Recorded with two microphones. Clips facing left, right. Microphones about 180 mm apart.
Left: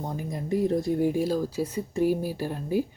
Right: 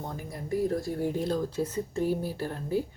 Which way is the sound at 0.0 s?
15° left (ahead or behind).